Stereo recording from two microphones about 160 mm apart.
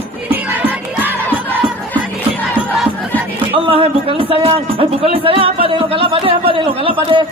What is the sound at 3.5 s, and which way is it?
Speech, 35° right (ahead or behind).